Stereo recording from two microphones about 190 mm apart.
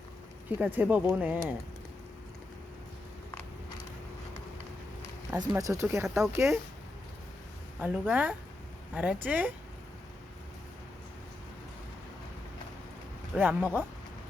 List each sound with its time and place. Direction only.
0.6 s speech: 10° right (ahead or behind)
5.4 s speech: 15° right (ahead or behind)
7.8 s speech: 10° right (ahead or behind)
13.3 s speech: 5° right (ahead or behind)